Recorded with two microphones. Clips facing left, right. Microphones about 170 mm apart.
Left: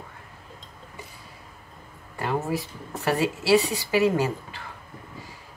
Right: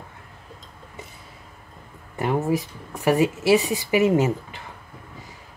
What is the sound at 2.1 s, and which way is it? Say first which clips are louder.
Speech: right 4 dB; 20° right (ahead or behind).